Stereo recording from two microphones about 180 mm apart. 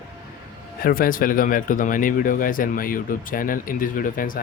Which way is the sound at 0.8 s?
55° left (ahead or behind).